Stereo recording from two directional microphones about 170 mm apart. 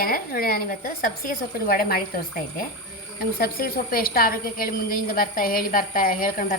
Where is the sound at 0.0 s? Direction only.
60° left (ahead or behind).